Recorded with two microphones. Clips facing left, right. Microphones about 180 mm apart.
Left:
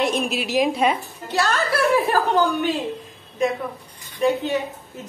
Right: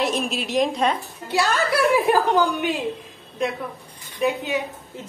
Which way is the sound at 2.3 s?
10° right (ahead or behind).